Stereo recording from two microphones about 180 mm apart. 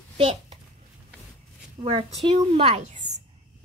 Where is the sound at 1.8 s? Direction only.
30° right (ahead or behind).